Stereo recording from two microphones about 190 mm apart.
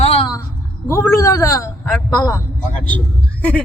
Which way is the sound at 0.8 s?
15° left (ahead or behind).